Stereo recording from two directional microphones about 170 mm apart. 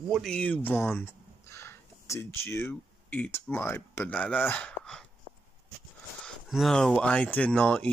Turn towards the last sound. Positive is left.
turn(degrees=5)  # may be behind; listen again after turning